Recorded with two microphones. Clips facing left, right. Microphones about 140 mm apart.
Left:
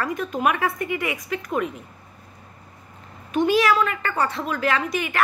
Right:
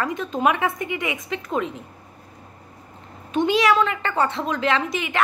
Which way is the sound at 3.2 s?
25° right (ahead or behind).